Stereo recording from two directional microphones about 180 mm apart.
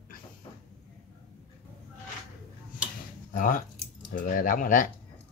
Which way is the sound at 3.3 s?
50° left (ahead or behind).